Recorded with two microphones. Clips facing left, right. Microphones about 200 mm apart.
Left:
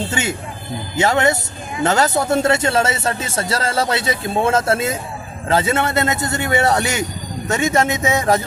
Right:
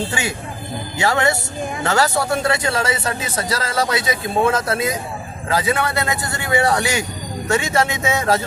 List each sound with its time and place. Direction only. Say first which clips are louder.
0.1 s speech: left 2 dB; 20° left (ahead or behind)